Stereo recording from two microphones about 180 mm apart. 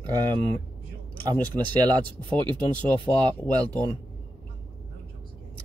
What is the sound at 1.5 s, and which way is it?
Speech, 25° right (ahead or behind).